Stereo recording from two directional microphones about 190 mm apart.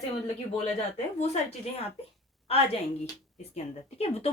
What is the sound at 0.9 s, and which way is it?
Speech, 35° left (ahead or behind).